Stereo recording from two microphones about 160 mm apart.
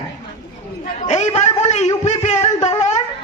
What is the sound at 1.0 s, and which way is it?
Speech, 45° left (ahead or behind).